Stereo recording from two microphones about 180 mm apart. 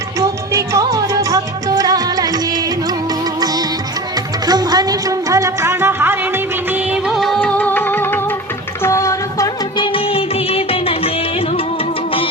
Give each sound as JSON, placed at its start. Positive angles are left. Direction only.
{"t": 0.2, "sound": "music", "side_deg": -15}
{"t": 4.4, "sound": "music", "side_deg": -20}